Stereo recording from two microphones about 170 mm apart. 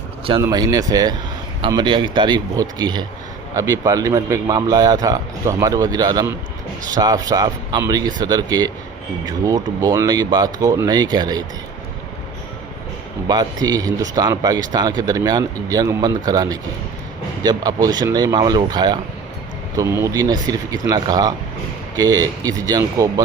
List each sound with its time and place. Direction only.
0.4 s speech: 20° right (ahead or behind)
13.2 s speech: 25° right (ahead or behind)